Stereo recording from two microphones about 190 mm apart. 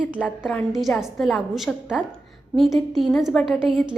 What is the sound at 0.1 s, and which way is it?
A woman's voice, 5° right (ahead or behind).